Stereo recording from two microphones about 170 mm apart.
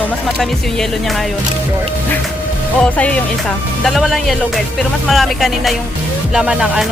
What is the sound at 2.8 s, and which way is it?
Speech, 5° left (ahead or behind).